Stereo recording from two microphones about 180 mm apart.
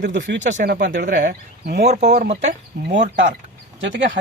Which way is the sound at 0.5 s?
55° right (ahead or behind).